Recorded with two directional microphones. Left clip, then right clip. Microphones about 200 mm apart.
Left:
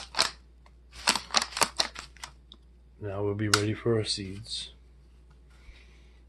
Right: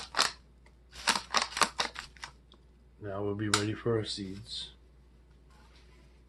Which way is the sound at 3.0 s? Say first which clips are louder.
Left 3 dB; 40° left (ahead or behind).